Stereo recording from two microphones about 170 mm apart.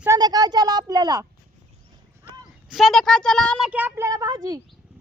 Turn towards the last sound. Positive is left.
turn(degrees=-20)  # may be behind; listen again after turning